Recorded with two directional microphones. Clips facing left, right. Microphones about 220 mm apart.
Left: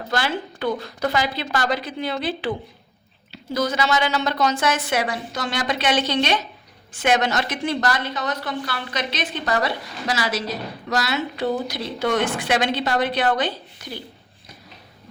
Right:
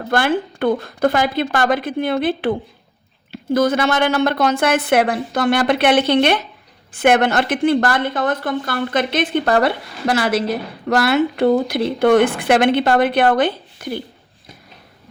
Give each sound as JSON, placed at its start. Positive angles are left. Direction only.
{"t": 0.1, "sound": "a woman's voice", "side_deg": -55}